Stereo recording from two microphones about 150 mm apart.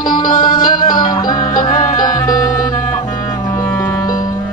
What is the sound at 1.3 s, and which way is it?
Music, 60° left (ahead or behind).